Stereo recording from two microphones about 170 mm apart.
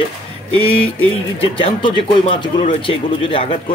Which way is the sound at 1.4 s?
35° left (ahead or behind).